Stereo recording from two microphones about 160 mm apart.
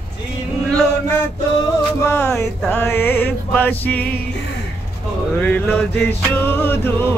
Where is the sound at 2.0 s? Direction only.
15° left (ahead or behind).